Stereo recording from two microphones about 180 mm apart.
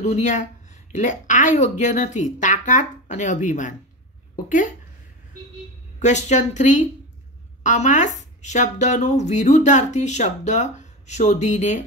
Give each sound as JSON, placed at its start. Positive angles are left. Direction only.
{"t": 0.0, "sound": "a woman's voice", "side_deg": 40}
{"t": 5.9, "sound": "a woman's voice", "side_deg": 40}